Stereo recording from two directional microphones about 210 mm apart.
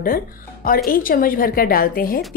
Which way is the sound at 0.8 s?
40° left (ahead or behind).